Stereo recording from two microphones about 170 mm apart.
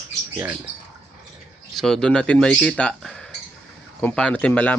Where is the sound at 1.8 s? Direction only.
Centre (ahead or behind).